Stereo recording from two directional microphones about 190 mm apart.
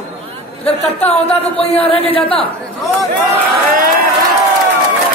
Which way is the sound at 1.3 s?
30° left (ahead or behind).